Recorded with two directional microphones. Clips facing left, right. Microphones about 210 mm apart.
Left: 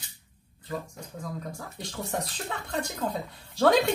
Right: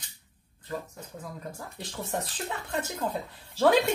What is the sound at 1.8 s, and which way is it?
Speech, 5° right (ahead or behind).